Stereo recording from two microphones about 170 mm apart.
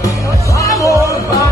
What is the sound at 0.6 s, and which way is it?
Music, 20° left (ahead or behind).